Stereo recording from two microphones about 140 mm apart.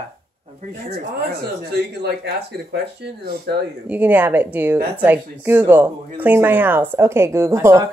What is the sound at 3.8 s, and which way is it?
Speech, 10° right (ahead or behind).